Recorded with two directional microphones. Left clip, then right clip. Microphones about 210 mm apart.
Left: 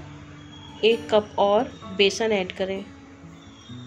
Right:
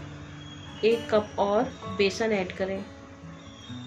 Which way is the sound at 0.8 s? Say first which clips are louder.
Left 4 dB; 15° left (ahead or behind).